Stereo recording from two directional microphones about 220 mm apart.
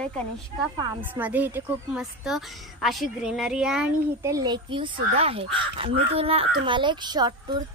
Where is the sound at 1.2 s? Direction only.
5° right (ahead or behind).